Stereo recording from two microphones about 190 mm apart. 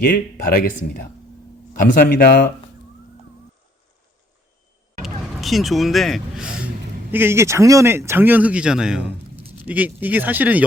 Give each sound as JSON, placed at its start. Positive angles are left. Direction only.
{"t": 0.1, "sound": "speech", "side_deg": 50}
{"t": 5.0, "sound": "speech", "side_deg": 0}